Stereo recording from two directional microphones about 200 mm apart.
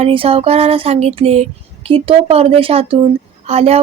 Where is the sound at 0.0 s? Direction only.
30° right (ahead or behind).